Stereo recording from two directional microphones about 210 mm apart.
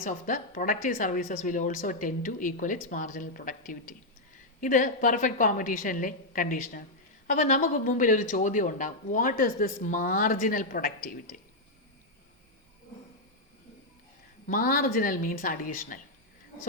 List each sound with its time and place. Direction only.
0.0 s speech: 40° left (ahead or behind)
14.4 s speech: 40° left (ahead or behind)